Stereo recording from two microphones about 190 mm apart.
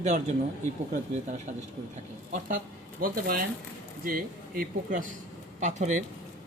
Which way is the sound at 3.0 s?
50° right (ahead or behind).